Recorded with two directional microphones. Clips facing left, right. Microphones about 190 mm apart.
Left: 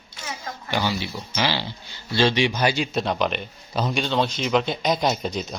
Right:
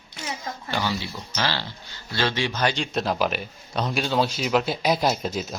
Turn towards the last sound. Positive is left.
turn(degrees=-5)  # may be behind; listen again after turning